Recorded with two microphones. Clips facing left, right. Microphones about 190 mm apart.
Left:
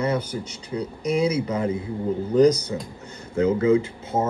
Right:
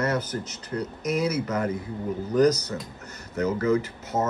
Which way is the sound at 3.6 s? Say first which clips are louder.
Left 4 dB; 25° left (ahead or behind).